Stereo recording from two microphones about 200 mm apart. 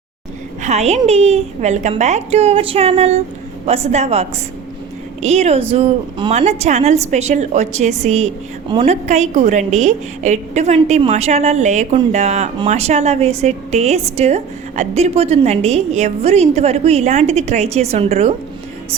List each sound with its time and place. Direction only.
0.6 s a woman's voice: 35° right (ahead or behind)
8.7 s a woman's voice: 25° right (ahead or behind)
9.0 s a woman's voice: 35° right (ahead or behind)